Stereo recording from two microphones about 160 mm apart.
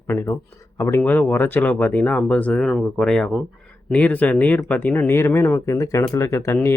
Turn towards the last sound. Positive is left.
turn(degrees=15)  # may be behind; listen again after turning